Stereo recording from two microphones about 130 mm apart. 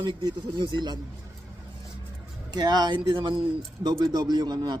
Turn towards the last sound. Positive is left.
turn(degrees=-35)  # may be behind; listen again after turning